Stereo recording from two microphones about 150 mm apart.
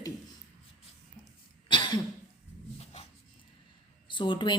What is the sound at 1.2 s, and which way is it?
Cough, 30° left (ahead or behind).